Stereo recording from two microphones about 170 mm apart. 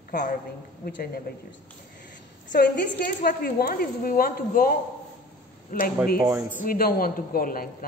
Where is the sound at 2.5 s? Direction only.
75° left (ahead or behind).